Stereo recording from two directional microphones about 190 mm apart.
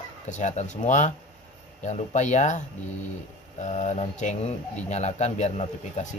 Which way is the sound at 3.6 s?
35° left (ahead or behind).